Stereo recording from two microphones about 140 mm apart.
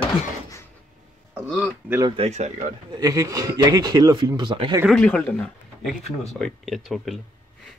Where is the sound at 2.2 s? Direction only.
50° right (ahead or behind).